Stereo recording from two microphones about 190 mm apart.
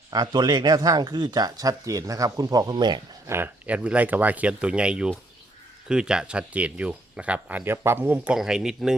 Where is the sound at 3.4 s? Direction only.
10° right (ahead or behind).